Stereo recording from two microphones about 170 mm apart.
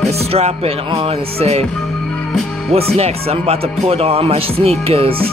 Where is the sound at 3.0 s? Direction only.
35° right (ahead or behind).